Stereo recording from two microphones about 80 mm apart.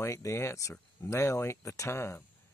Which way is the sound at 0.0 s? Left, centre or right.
Left.